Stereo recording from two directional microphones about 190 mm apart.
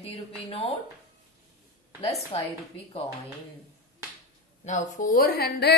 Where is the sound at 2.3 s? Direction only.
35° left (ahead or behind).